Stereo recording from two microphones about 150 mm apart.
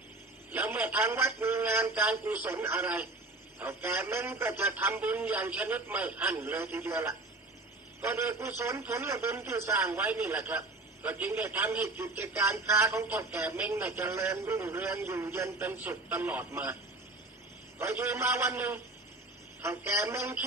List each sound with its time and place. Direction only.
0.5 s a man's voice: 10° right (ahead or behind)
17.7 s a man's voice: 15° right (ahead or behind)